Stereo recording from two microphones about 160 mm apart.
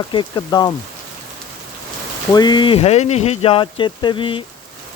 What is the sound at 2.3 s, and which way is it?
Speech, 25° left (ahead or behind).